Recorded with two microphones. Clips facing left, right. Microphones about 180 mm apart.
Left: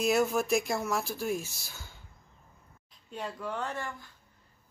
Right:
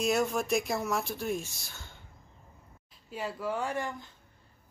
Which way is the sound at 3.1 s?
5° right (ahead or behind).